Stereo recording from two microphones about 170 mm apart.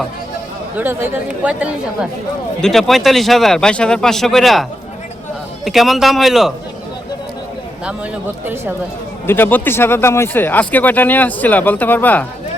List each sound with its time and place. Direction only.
0.8 s a woman's voice: 10° right (ahead or behind)
5.6 s speech: centre (ahead or behind)
9.2 s speech: 10° left (ahead or behind)